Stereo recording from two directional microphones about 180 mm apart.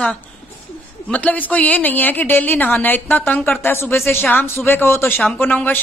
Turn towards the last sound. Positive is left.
turn(degrees=10)  # may be behind; listen again after turning